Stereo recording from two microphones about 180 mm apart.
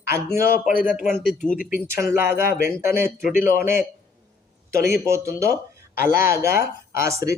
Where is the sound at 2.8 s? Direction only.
15° right (ahead or behind).